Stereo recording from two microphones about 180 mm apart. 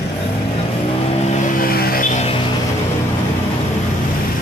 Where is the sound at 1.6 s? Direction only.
55° left (ahead or behind).